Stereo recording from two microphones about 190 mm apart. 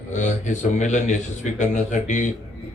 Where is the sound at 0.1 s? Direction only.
40° left (ahead or behind).